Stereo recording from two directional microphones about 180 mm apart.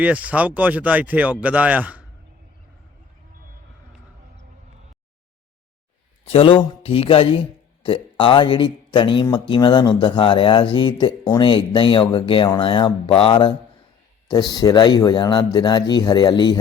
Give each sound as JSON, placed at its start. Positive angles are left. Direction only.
{"t": 0.0, "sound": "speech", "side_deg": -10}
{"t": 6.2, "sound": "a man's voice", "side_deg": 30}